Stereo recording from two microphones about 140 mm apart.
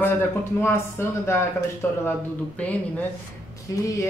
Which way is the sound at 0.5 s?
15° left (ahead or behind).